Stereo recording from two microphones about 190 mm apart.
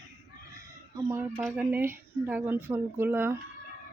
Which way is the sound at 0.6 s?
15° right (ahead or behind).